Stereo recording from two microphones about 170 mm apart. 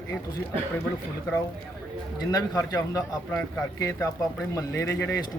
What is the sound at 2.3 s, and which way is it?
Speech, 20° left (ahead or behind).